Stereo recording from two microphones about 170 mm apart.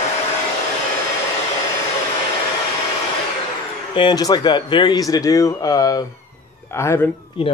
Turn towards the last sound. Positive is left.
turn(degrees=20)  # may be behind; listen again after turning